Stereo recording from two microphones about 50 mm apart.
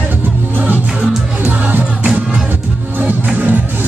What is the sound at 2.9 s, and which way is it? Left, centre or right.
Music, right.